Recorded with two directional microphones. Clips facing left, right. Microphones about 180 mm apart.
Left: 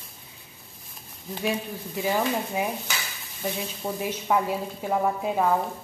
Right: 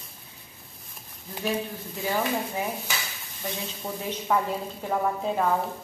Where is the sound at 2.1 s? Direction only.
15° left (ahead or behind).